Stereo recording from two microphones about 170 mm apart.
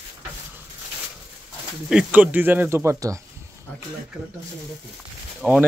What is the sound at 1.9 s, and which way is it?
Speech, 5° right (ahead or behind).